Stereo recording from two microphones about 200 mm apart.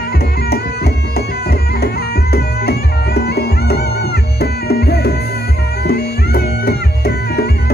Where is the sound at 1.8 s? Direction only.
50° left (ahead or behind).